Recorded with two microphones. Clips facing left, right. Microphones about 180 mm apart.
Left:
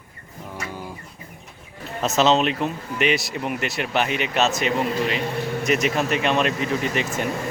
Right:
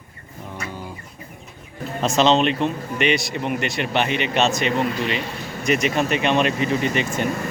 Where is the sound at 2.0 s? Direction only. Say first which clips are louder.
Right 1 dB; 5° left (ahead or behind).